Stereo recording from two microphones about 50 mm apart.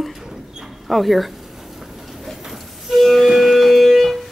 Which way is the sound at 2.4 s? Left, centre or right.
Centre.